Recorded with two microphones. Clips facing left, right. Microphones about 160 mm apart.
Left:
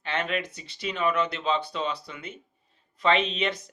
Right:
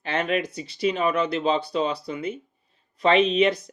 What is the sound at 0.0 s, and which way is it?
Speech, 40° right (ahead or behind).